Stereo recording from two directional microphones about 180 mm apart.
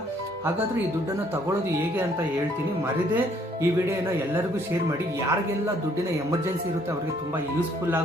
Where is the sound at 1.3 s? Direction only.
15° right (ahead or behind).